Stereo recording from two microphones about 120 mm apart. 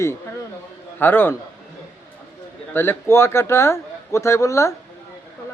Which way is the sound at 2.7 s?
20° left (ahead or behind).